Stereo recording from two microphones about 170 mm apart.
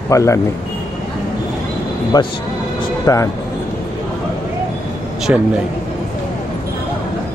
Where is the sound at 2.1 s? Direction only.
25° left (ahead or behind).